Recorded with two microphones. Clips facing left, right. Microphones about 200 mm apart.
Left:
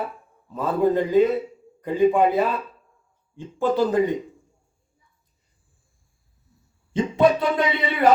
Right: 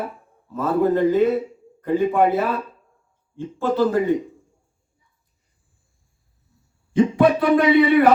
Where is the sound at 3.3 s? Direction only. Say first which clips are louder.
Right 1 dB; 15° left (ahead or behind).